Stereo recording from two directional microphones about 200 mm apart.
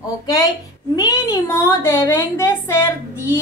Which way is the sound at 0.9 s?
15° left (ahead or behind).